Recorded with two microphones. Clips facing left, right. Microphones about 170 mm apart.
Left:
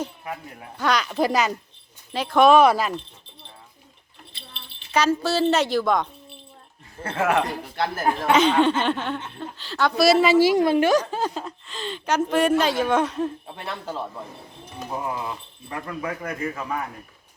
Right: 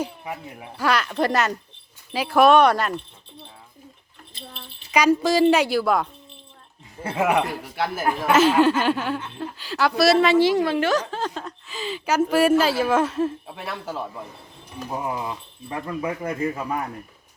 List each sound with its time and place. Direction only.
0.0 s speech: 10° right (ahead or behind)
4.9 s speech: 15° right (ahead or behind)